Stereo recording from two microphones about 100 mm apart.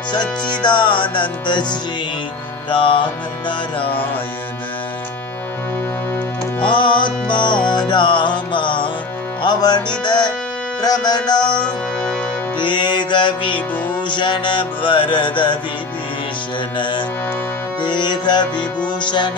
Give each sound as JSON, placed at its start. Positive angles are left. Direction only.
{"t": 0.1, "sound": "music", "side_deg": 50}
{"t": 6.6, "sound": "music", "side_deg": 55}
{"t": 11.5, "sound": "music", "side_deg": 10}
{"t": 12.5, "sound": "music", "side_deg": 55}
{"t": 16.7, "sound": "music", "side_deg": 55}